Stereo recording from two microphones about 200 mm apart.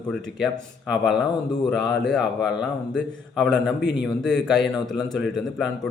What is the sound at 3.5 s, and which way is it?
Speech, 60° left (ahead or behind).